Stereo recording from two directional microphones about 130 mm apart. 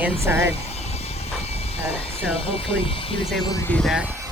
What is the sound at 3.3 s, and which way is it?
Speech, centre (ahead or behind).